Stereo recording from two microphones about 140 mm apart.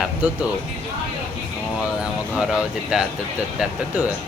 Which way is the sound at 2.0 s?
5° right (ahead or behind).